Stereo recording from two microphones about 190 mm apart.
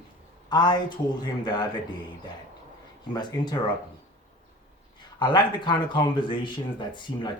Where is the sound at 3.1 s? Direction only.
20° left (ahead or behind).